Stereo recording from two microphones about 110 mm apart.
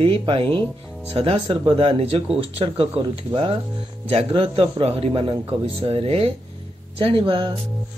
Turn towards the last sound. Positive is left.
turn(degrees=-50)  # may be behind; listen again after turning